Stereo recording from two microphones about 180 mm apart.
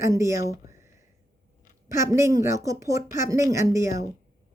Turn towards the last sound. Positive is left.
turn(degrees=-15)  # may be behind; listen again after turning